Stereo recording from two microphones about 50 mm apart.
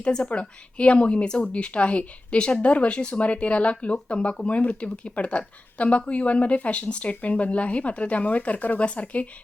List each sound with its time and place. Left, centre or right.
0.0 s a woman's voice: left